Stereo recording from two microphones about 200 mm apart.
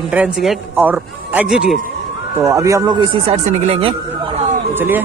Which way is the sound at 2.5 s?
15° right (ahead or behind).